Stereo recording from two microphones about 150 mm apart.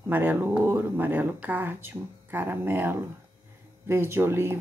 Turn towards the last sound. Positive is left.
turn(degrees=-15)  # may be behind; listen again after turning